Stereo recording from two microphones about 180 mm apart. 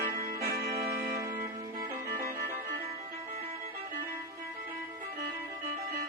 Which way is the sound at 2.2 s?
50° right (ahead or behind).